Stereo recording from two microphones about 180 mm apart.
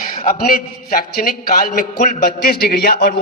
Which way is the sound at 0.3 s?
50° left (ahead or behind).